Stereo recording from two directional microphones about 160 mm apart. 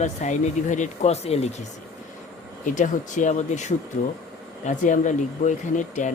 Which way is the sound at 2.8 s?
50° left (ahead or behind).